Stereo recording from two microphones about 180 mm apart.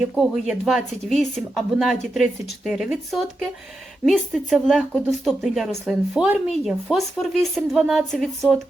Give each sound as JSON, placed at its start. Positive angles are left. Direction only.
{"t": 0.1, "sound": "speech", "side_deg": 0}